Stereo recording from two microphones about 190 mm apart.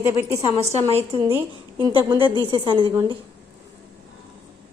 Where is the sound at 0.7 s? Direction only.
30° right (ahead or behind).